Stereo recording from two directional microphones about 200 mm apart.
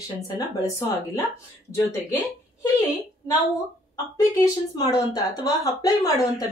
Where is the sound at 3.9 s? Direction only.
20° left (ahead or behind).